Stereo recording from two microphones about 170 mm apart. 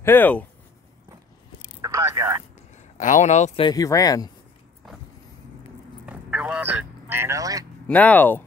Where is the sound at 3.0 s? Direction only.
45° left (ahead or behind).